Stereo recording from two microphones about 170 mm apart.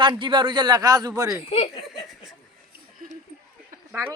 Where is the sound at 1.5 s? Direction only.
35° left (ahead or behind).